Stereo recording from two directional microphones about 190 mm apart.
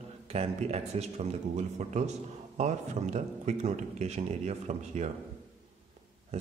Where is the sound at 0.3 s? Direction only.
30° right (ahead or behind).